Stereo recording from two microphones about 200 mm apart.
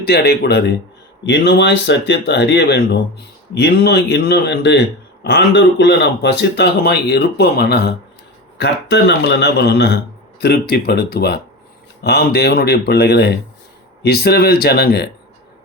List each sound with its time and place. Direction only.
0.0 s a man's voice: 55° left (ahead or behind)